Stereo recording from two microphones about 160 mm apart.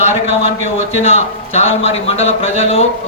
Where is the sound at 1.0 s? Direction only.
40° left (ahead or behind).